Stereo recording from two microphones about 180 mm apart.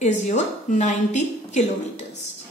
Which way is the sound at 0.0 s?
40° left (ahead or behind).